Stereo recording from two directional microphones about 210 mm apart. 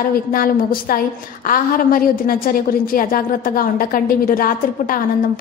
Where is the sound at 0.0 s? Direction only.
45° left (ahead or behind).